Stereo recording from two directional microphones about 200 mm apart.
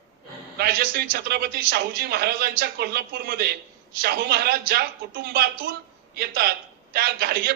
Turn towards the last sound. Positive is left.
turn(degrees=-50)  # may be behind; listen again after turning